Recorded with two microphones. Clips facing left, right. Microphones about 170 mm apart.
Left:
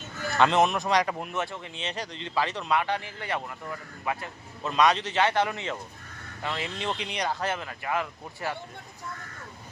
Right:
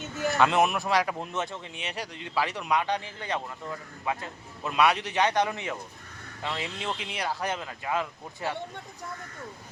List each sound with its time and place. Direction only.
0.2 s speech: 5° right (ahead or behind)
1.3 s speech: 15° right (ahead or behind)
6.7 s speech: 5° right (ahead or behind)
7.4 s speech: 15° right (ahead or behind)